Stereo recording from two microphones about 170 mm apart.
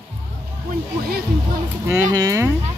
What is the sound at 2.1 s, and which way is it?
Speech, 20° right (ahead or behind).